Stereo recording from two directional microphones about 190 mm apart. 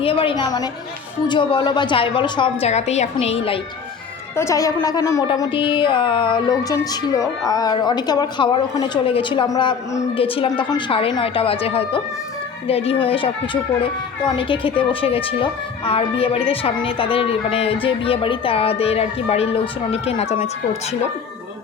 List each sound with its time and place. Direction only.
0.0 s a woman's voice: 30° left (ahead or behind)
4.4 s a woman's voice: 15° left (ahead or behind); by 20.3 s 30° left (ahead or behind)